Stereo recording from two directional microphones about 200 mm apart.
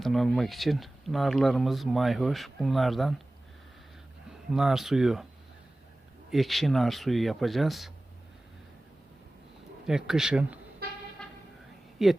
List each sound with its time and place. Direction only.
0.0 s speech: centre (ahead or behind)
4.5 s speech: centre (ahead or behind)
6.3 s speech: centre (ahead or behind)
9.8 s speech: centre (ahead or behind)
10.8 s vehicle: 50° right (ahead or behind)
11.2 s vehicle: 5° left (ahead or behind)
12.0 s speech: centre (ahead or behind)